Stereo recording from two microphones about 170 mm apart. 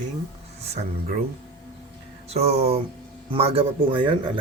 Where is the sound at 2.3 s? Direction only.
40° right (ahead or behind).